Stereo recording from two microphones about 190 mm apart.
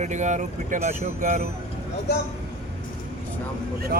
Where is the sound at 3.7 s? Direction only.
55° right (ahead or behind).